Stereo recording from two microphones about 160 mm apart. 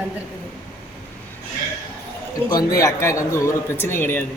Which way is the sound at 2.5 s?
25° left (ahead or behind).